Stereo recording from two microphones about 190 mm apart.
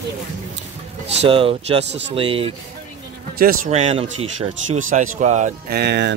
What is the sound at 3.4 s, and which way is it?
Speech, 50° right (ahead or behind).